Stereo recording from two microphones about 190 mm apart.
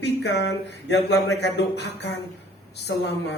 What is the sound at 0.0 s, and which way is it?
Speech, 65° left (ahead or behind).